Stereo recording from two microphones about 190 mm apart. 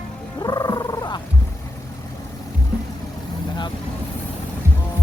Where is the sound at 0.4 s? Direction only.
20° left (ahead or behind).